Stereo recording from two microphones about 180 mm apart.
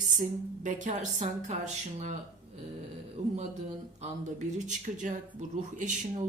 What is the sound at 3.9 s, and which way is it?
Speech, 40° right (ahead or behind).